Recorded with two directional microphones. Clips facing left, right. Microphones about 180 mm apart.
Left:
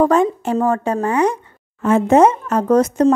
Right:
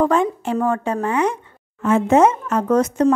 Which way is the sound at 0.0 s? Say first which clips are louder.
Left 3 dB; 40° left (ahead or behind).